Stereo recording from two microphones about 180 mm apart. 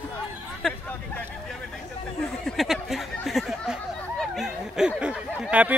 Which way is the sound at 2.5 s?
Centre (ahead or behind).